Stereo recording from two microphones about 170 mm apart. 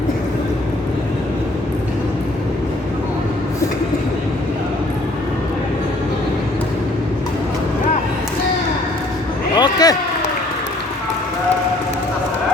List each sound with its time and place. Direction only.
9.6 s basketball bounce: 25° left (ahead or behind)